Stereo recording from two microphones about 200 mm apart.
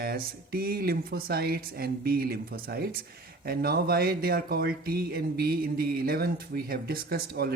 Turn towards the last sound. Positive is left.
turn(degrees=-50)  # may be behind; listen again after turning